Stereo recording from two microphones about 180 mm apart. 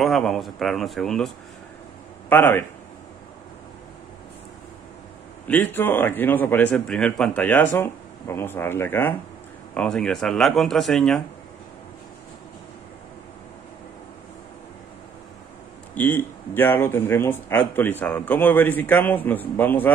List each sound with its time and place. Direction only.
0.0 s speech: centre (ahead or behind)
5.5 s speech: 10° left (ahead or behind)
15.9 s speech: 10° left (ahead or behind)